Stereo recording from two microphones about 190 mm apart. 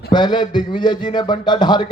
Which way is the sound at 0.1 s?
25° left (ahead or behind).